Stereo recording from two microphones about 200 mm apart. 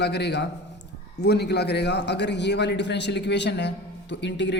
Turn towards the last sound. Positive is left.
turn(degrees=60)  # may be behind; listen again after turning